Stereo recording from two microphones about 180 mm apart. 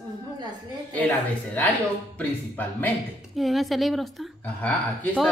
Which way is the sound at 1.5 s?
10° left (ahead or behind).